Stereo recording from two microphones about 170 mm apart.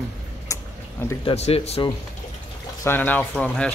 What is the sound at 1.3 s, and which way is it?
Speech, 35° left (ahead or behind).